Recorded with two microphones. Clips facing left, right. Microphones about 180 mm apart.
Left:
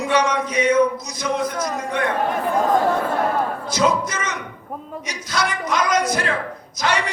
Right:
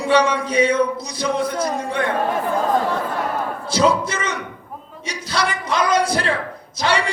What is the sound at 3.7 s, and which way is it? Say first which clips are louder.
A man's voice: right 4 dB; 30° right (ahead or behind).